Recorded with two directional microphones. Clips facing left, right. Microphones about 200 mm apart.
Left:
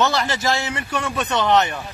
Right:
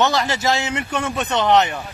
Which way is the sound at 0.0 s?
20° right (ahead or behind).